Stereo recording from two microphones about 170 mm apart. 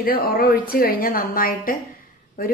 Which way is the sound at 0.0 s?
60° left (ahead or behind).